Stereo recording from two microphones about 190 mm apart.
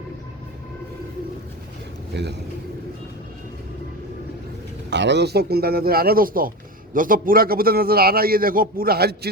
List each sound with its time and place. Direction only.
2.1 s a man's voice: 65° right (ahead or behind)
4.9 s a man's voice: 65° right (ahead or behind)